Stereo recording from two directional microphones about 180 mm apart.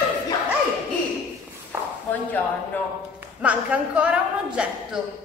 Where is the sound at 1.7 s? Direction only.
10° right (ahead or behind).